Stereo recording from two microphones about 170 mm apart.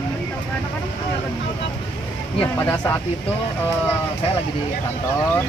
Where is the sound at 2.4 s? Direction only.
10° left (ahead or behind).